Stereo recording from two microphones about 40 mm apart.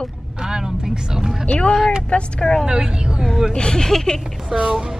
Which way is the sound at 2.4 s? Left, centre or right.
Centre.